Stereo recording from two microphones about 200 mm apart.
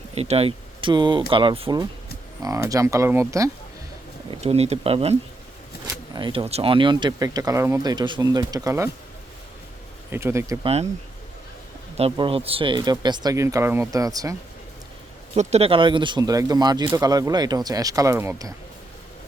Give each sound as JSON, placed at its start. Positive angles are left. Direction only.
{"t": 0.1, "sound": "speech", "side_deg": -30}
{"t": 4.4, "sound": "speech", "side_deg": -30}
{"t": 6.1, "sound": "speech", "side_deg": -25}
{"t": 10.1, "sound": "speech", "side_deg": -10}
{"t": 10.6, "sound": "speech", "side_deg": -30}
{"t": 11.9, "sound": "speech", "side_deg": -25}
{"t": 15.4, "sound": "speech", "side_deg": -35}